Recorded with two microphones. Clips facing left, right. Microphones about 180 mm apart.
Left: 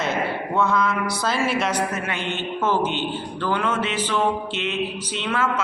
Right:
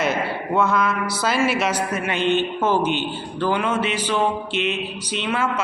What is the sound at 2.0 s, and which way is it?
Music, 20° right (ahead or behind).